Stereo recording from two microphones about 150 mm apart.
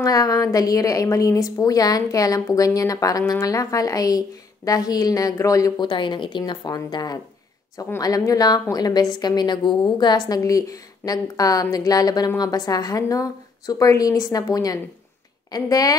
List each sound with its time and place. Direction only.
0.0 s a woman's voice: 25° left (ahead or behind)